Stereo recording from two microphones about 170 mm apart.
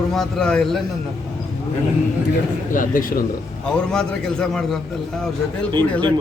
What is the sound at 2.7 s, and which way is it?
Speech, 55° left (ahead or behind).